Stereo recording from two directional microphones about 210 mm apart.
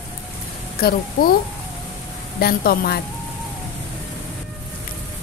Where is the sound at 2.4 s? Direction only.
45° left (ahead or behind).